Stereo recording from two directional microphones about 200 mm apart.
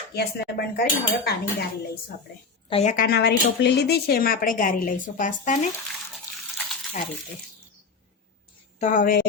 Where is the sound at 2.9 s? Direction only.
50° left (ahead or behind).